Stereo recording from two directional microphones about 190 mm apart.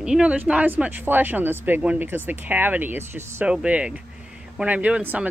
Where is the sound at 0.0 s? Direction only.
5° right (ahead or behind).